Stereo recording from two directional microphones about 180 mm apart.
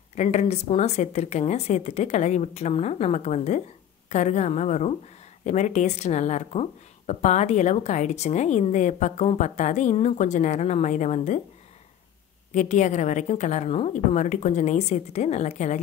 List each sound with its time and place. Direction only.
0.1 s speech: 40° left (ahead or behind)
12.5 s speech: 40° left (ahead or behind)